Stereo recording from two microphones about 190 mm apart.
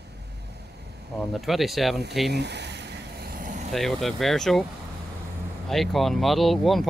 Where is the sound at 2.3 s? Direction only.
65° right (ahead or behind); by 3.7 s 45° right (ahead or behind).